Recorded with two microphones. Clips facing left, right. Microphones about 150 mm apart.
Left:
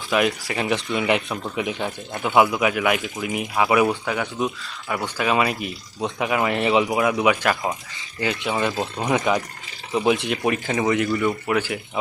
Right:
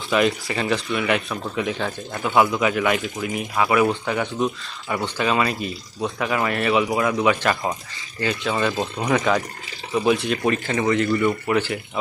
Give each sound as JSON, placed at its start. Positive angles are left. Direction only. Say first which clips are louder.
{"t": 0.1, "sound": "speech", "louder": "right 1 dB", "side_deg": 5}
{"t": 8.7, "sound": "a man's voice", "louder": "right 1 dB", "side_deg": 0}
{"t": 11.1, "sound": "a man's voice", "louder": "right 2 dB", "side_deg": 0}